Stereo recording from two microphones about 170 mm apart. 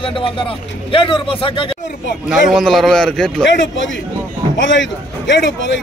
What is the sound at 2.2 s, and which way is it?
A man's voice, centre (ahead or behind).